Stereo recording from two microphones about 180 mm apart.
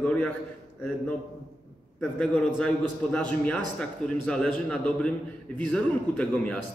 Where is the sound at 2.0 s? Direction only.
5° left (ahead or behind).